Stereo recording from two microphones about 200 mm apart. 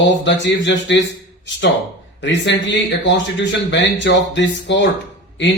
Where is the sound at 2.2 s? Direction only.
60° left (ahead or behind).